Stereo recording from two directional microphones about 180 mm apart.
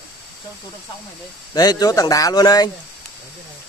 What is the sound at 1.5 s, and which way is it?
Speech, 20° left (ahead or behind).